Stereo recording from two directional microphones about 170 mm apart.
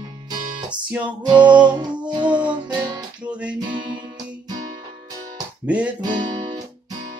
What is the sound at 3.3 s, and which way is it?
Music, 5° right (ahead or behind).